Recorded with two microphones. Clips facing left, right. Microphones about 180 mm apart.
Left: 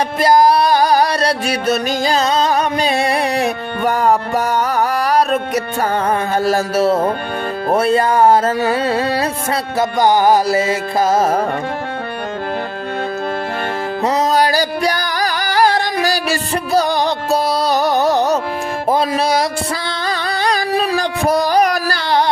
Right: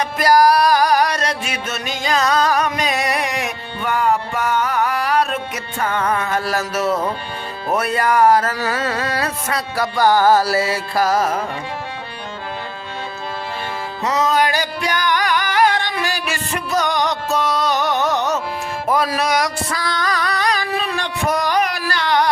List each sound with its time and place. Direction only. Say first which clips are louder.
0.2 s music: left 2 dB; 25° left (ahead or behind)
14.0 s music: left 2 dB; 35° left (ahead or behind)